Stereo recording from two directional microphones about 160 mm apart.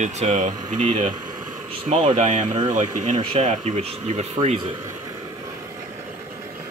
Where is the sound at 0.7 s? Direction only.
35° right (ahead or behind).